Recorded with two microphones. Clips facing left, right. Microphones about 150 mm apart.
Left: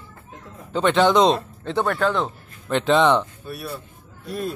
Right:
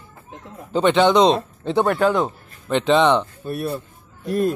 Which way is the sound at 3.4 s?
35° right (ahead or behind).